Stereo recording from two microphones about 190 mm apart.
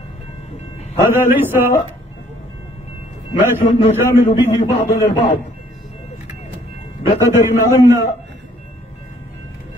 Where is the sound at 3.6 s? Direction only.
35° left (ahead or behind).